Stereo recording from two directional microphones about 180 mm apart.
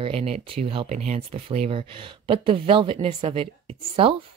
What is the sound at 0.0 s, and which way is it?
Speech, 35° right (ahead or behind).